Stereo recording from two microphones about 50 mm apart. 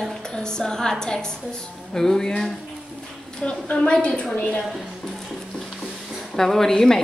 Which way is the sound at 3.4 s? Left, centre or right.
Centre.